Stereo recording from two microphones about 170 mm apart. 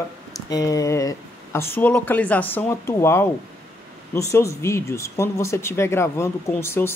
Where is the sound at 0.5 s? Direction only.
20° left (ahead or behind).